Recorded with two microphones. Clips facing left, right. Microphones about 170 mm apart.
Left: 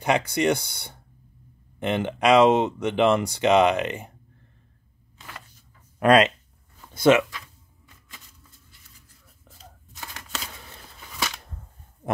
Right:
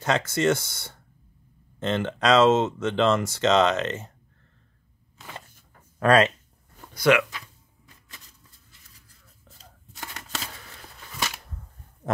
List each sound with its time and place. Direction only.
0.0 s speech: 15° left (ahead or behind)
5.9 s speech: 15° left (ahead or behind)
11.1 s a sound: 5° right (ahead or behind)